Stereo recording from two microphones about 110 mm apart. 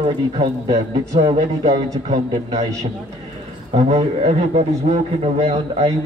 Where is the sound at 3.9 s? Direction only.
90° right.